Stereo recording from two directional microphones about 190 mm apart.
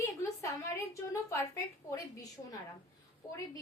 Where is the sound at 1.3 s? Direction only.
15° left (ahead or behind).